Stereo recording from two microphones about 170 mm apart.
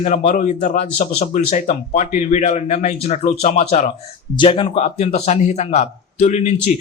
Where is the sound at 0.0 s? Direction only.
45° left (ahead or behind).